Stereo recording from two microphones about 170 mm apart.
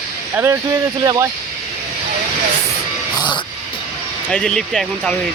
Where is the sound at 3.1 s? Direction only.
25° left (ahead or behind).